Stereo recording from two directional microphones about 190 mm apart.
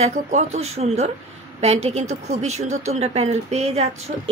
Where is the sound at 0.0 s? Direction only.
40° right (ahead or behind).